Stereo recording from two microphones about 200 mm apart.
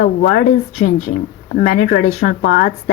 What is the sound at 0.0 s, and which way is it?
Speech, 40° left (ahead or behind).